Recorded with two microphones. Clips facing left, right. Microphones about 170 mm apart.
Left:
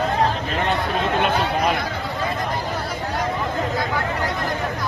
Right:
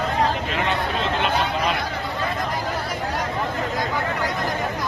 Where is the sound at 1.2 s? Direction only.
50° left (ahead or behind).